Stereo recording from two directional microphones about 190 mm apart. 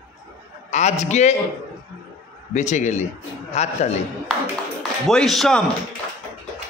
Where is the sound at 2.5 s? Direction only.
40° left (ahead or behind).